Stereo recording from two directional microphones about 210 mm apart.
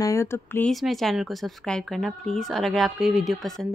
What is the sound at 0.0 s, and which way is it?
Speech, 15° left (ahead or behind).